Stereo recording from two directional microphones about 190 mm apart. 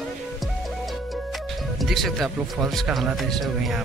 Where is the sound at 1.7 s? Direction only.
Centre (ahead or behind).